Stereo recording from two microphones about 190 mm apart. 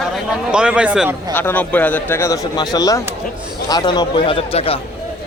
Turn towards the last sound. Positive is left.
turn(degrees=30)  # may be behind; listen again after turning